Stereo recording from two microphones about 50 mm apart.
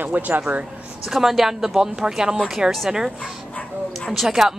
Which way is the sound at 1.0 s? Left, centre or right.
Centre.